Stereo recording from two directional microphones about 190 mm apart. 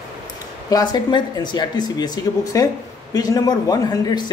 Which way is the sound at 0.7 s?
20° left (ahead or behind).